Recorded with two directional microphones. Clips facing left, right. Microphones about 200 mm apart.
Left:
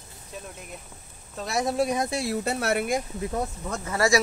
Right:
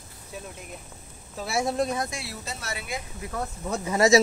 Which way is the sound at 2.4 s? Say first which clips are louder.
Left 11 dB; 60° left (ahead or behind).